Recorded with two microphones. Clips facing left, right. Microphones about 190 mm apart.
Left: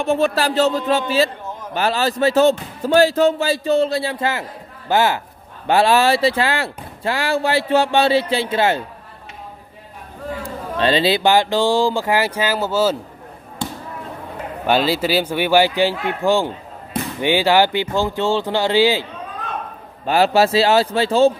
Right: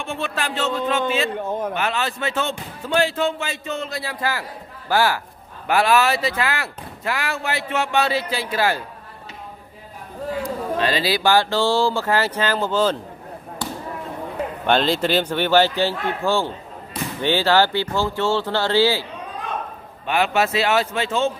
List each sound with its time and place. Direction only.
0.0 s speech: 40° left (ahead or behind); by 8.8 s 25° left (ahead or behind)
10.4 s speech: 30° left (ahead or behind); by 12.9 s 10° left (ahead or behind)
14.7 s speech: 5° left (ahead or behind)
20.1 s speech: 35° left (ahead or behind)